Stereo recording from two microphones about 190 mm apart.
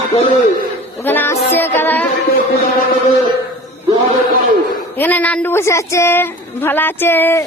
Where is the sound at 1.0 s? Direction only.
10° left (ahead or behind).